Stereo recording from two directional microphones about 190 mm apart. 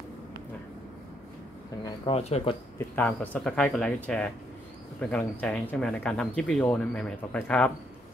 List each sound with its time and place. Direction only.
1.9 s speech: 30° left (ahead or behind)
3.0 s speech: 10° left (ahead or behind)